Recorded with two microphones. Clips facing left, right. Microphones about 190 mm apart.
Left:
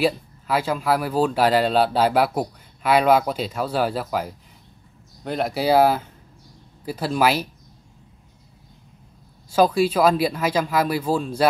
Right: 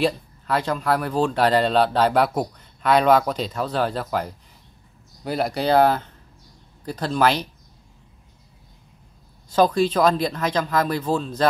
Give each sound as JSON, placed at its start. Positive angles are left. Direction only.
{"t": 0.0, "sound": "speech", "side_deg": 5}
{"t": 9.5, "sound": "speech", "side_deg": 10}